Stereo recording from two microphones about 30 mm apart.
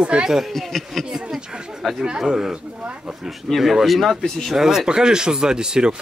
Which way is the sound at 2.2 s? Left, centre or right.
Centre.